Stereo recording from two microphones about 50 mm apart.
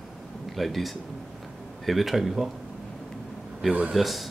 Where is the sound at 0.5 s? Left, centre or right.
Centre.